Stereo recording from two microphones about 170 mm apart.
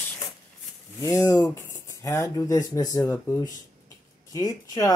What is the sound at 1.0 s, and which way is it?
Speech, 20° left (ahead or behind).